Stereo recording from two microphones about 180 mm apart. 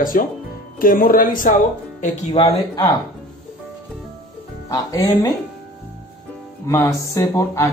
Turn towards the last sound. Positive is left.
turn(degrees=15)  # may be behind; listen again after turning